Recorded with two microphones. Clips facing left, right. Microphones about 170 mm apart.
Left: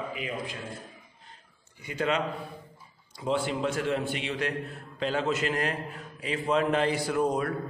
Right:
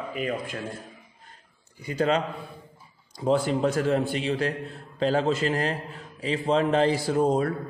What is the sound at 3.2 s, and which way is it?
A man's voice, 40° right (ahead or behind).